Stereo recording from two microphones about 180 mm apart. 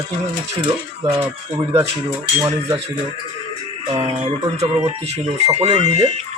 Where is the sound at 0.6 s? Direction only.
30° right (ahead or behind).